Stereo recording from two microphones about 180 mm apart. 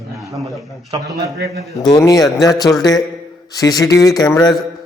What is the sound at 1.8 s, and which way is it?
Speech, 20° left (ahead or behind).